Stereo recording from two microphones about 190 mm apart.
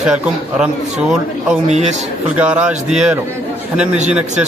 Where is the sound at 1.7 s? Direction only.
35° right (ahead or behind).